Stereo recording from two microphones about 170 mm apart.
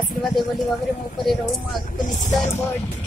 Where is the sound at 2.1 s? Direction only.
50° left (ahead or behind).